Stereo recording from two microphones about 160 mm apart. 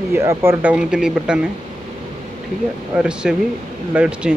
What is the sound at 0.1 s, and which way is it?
Speech, 15° right (ahead or behind).